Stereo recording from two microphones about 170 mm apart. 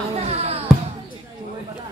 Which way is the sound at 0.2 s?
40° right (ahead or behind).